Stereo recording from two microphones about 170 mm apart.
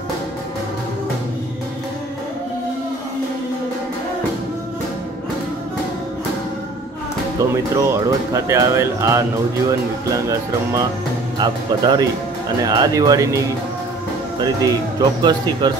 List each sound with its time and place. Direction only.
7.7 s speech: 20° right (ahead or behind)
11.3 s speech: 25° right (ahead or behind)
14.4 s speech: 25° right (ahead or behind)